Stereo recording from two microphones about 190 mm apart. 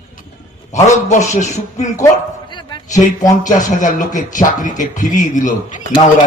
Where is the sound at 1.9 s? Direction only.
20° left (ahead or behind).